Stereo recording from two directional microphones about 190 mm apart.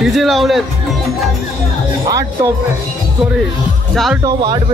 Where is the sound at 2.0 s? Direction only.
20° right (ahead or behind).